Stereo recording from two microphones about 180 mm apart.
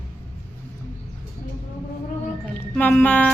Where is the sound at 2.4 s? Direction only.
10° left (ahead or behind).